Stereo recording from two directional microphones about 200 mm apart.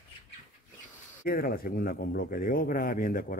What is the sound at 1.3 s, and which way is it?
A man's voice, 45° left (ahead or behind).